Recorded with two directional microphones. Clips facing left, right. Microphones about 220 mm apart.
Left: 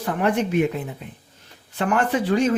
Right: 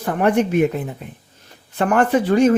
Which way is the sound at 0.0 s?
50° right (ahead or behind).